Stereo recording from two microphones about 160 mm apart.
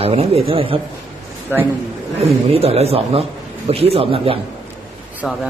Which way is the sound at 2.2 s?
40° right (ahead or behind).